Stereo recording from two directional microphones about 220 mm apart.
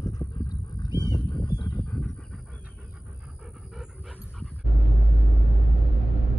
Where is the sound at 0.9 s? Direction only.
15° right (ahead or behind).